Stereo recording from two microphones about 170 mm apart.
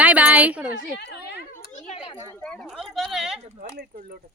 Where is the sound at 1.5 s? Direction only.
50° left (ahead or behind).